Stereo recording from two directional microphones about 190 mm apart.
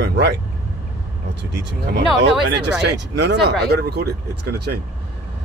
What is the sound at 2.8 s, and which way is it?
Speech, 65° right (ahead or behind).